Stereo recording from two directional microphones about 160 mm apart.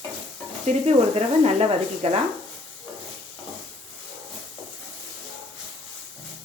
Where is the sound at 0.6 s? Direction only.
45° right (ahead or behind).